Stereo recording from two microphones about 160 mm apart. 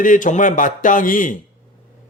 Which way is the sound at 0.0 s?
55° left (ahead or behind).